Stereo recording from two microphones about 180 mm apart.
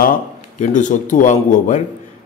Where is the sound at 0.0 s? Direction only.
45° left (ahead or behind).